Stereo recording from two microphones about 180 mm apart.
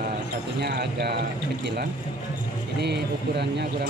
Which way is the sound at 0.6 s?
65° right (ahead or behind).